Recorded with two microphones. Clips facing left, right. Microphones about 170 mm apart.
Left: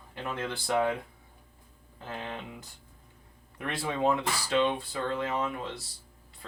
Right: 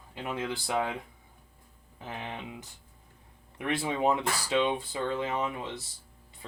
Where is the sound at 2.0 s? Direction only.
15° right (ahead or behind).